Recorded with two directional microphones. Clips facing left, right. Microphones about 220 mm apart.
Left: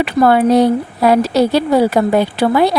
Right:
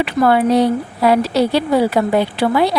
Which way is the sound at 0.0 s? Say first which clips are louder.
Left 2 dB; 45° left (ahead or behind).